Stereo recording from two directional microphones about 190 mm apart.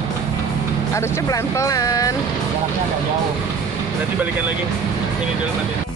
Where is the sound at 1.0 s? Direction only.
15° left (ahead or behind).